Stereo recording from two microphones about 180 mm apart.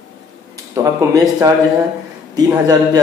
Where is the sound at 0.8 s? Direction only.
20° right (ahead or behind).